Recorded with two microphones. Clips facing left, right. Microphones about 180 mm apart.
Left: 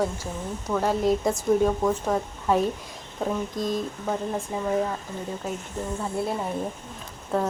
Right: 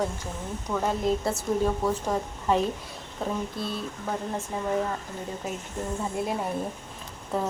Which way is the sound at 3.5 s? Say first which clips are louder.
Left 6 dB; 40° left (ahead or behind).